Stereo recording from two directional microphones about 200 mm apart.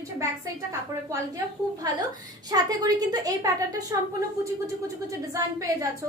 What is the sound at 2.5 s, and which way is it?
A woman's voice, 20° right (ahead or behind).